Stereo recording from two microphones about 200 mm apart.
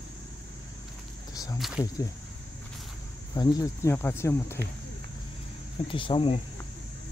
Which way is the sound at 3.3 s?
15° left (ahead or behind).